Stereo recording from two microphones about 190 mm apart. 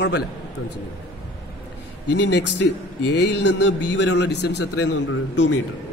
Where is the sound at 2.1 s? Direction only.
65° left (ahead or behind).